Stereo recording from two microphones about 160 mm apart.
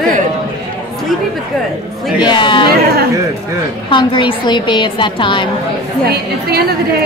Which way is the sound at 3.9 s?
30° left (ahead or behind).